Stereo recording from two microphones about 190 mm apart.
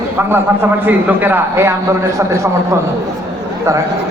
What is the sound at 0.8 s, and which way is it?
Speech, 10° right (ahead or behind).